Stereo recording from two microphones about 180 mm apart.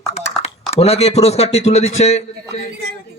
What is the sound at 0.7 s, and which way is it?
A man's voice, 35° left (ahead or behind).